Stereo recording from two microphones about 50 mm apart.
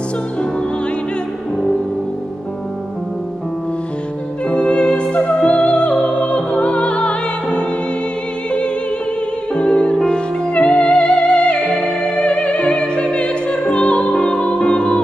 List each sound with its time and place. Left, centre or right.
4.5 s music: left